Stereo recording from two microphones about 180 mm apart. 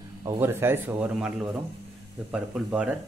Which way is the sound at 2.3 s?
5° right (ahead or behind).